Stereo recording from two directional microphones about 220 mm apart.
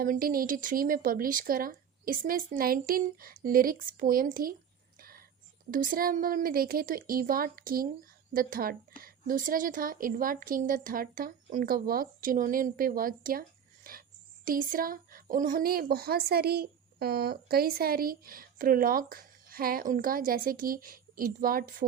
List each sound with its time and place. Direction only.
0.0 s speech: 40° right (ahead or behind)
4.9 s whispering: 40° right (ahead or behind)
5.7 s speech: 40° right (ahead or behind)
14.4 s speech: 40° right (ahead or behind)